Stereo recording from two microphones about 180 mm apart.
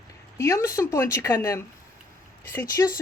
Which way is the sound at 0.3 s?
15° left (ahead or behind).